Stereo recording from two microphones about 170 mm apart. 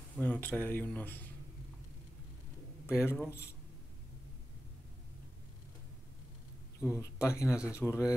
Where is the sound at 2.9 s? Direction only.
15° left (ahead or behind).